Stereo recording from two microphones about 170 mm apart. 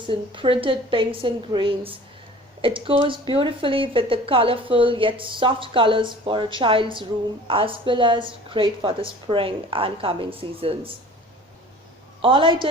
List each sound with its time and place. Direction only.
0.1 s speech: 30° right (ahead or behind)
12.2 s a woman's voice: 30° right (ahead or behind)